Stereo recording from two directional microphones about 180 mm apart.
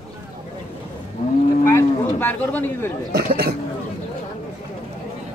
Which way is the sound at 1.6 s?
10° left (ahead or behind).